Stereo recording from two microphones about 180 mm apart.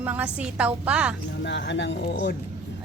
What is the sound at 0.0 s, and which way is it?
A woman's voice, 10° right (ahead or behind).